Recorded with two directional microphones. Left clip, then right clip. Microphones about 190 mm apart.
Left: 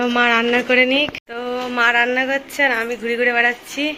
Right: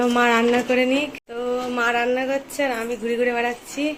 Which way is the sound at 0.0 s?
5° right (ahead or behind).